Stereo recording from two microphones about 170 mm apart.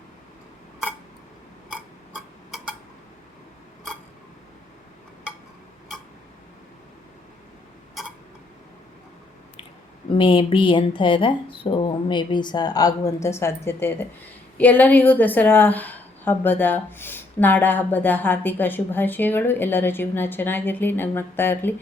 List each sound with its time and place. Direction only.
1.7 s tick-tock: 5° right (ahead or behind)
10.1 s a woman's voice: 30° left (ahead or behind); by 21.8 s 10° left (ahead or behind)